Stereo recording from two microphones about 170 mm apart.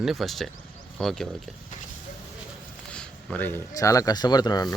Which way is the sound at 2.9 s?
10° left (ahead or behind).